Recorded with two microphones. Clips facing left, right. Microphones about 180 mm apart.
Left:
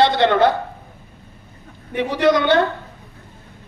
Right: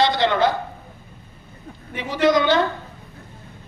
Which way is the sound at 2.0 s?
60° left (ahead or behind).